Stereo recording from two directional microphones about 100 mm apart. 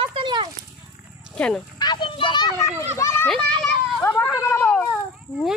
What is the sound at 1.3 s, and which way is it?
Speech, 10° left (ahead or behind).